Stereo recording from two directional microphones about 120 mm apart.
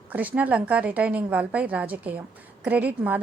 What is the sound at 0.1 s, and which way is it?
A woman's voice, 15° right (ahead or behind).